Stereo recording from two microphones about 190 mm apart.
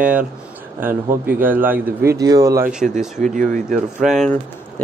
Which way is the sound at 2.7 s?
5° right (ahead or behind).